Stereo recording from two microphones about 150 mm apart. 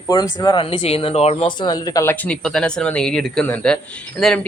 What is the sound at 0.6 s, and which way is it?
Speech, 40° left (ahead or behind).